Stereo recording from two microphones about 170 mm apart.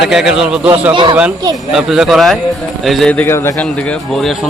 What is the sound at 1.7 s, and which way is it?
A man's voice, 5° right (ahead or behind).